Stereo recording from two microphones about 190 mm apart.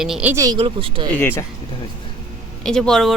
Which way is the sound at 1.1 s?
10° left (ahead or behind).